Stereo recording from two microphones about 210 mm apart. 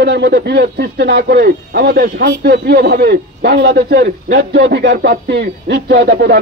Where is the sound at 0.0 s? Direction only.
55° right (ahead or behind).